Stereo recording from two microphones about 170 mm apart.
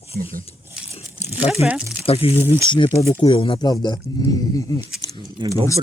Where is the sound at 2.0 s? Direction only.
35° left (ahead or behind).